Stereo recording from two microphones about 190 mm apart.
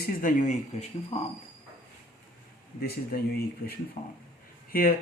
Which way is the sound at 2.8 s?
55° left (ahead or behind).